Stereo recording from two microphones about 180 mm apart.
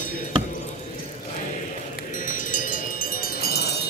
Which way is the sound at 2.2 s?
45° left (ahead or behind).